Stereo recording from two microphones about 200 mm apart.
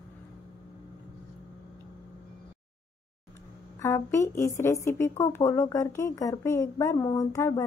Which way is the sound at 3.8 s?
15° left (ahead or behind).